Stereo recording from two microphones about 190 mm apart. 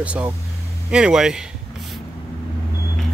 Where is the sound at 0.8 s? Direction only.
5° right (ahead or behind).